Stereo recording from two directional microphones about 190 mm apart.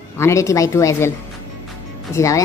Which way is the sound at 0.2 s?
15° left (ahead or behind).